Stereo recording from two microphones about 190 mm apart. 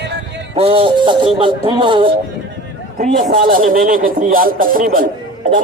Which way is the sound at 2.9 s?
45° right (ahead or behind).